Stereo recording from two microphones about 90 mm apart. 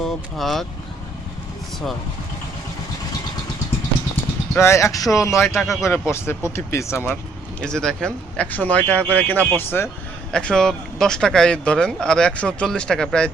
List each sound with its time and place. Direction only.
0.0 s speech: centre (ahead or behind)
4.5 s speech: 30° left (ahead or behind)
5.5 s a man's voice: centre (ahead or behind)
5.8 s speech: 30° left (ahead or behind)
7.6 s speech: 10° left (ahead or behind); by 9.9 s 25° left (ahead or behind)
10.3 s speech: 5° left (ahead or behind)